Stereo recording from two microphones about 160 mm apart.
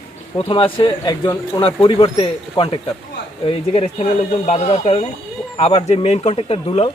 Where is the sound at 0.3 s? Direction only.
35° left (ahead or behind).